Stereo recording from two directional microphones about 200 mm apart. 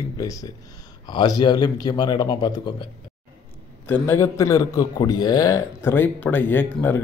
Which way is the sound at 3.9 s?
15° left (ahead or behind).